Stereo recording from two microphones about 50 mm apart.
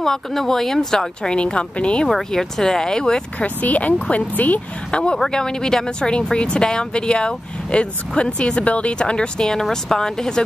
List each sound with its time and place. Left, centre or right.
0.0 s speech: centre
2.0 s speech: centre
3.4 s speech: left
4.9 s speech: centre